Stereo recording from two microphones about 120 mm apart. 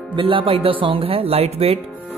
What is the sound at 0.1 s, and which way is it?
Speech, 45° right (ahead or behind).